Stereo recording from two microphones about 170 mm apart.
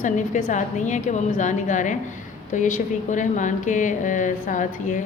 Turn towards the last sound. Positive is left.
turn(degrees=50)  # may be behind; listen again after turning